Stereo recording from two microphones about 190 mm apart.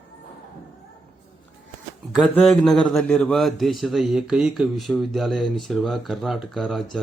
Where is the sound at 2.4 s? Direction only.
Centre (ahead or behind).